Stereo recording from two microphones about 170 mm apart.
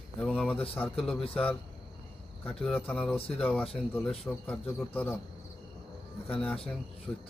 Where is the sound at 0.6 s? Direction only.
35° left (ahead or behind).